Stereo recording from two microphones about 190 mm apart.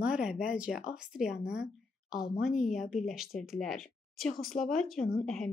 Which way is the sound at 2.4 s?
Centre (ahead or behind).